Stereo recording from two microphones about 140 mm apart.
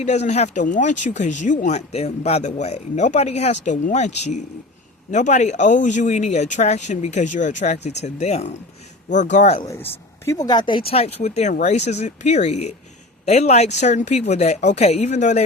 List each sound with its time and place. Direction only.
0.0 s speech: 50° left (ahead or behind)
9.0 s speech: 60° left (ahead or behind)
9.6 s speech: 15° left (ahead or behind)
10.4 s speech: 30° left (ahead or behind); by 15.4 s 60° left (ahead or behind)